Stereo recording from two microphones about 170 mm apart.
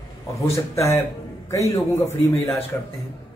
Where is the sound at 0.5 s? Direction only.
15° left (ahead or behind).